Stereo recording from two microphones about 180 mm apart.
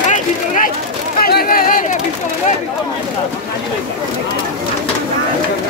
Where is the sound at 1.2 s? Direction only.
60° left (ahead or behind).